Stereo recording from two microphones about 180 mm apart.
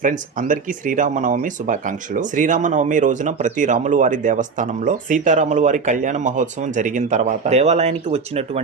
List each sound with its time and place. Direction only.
0.0 s speech: 45° right (ahead or behind)